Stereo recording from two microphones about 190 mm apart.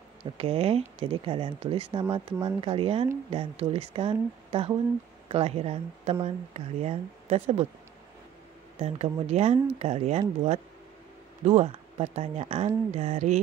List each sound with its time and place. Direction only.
0.2 s speech: 30° right (ahead or behind)
8.7 s speech: 35° right (ahead or behind)